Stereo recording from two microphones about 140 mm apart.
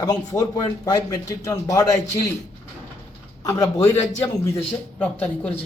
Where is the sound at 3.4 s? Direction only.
25° left (ahead or behind).